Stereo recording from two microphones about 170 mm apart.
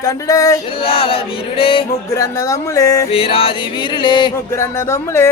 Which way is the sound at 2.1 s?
20° left (ahead or behind).